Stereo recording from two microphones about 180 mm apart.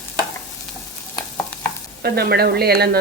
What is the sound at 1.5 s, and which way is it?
Stir, 10° left (ahead or behind).